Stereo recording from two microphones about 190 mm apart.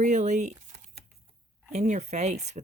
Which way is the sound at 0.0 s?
40° right (ahead or behind).